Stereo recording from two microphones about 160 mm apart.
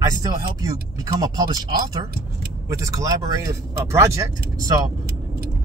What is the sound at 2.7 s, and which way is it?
Speech, 20° right (ahead or behind).